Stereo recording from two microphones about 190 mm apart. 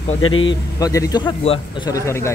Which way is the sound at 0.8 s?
20° left (ahead or behind).